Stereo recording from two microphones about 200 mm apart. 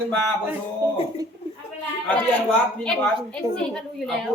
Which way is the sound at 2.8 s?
5° left (ahead or behind).